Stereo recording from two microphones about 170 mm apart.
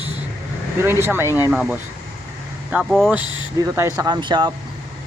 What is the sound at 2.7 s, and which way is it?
Speech, 5° right (ahead or behind).